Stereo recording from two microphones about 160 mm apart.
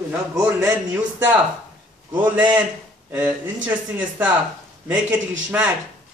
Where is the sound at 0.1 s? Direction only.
10° right (ahead or behind).